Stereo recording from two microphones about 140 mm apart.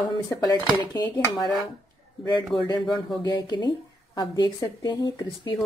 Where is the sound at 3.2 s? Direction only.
30° left (ahead or behind).